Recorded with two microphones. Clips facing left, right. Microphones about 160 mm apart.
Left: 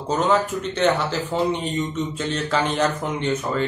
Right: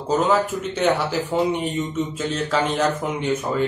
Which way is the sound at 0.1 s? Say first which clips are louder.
Right 1 dB; centre (ahead or behind).